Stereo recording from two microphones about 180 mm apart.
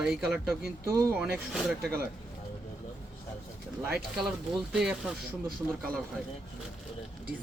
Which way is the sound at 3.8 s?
5° right (ahead or behind).